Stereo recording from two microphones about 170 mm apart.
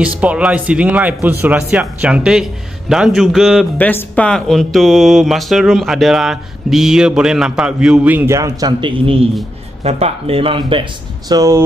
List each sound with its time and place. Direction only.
0.0 s speech: 10° right (ahead or behind)
3.7 s speech: 10° left (ahead or behind); by 11.6 s 20° right (ahead or behind)